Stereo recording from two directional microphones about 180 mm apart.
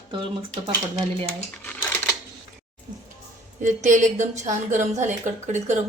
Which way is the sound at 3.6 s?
40° right (ahead or behind).